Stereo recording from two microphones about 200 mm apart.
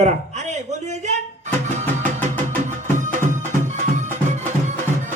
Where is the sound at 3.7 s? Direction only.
35° right (ahead or behind).